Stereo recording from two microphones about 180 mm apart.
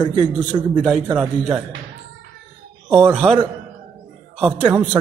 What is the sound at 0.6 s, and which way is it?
A man's voice, 5° right (ahead or behind).